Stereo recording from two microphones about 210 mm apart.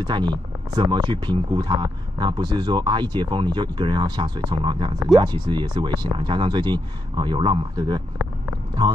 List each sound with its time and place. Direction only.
0.0 s speech: 20° right (ahead or behind)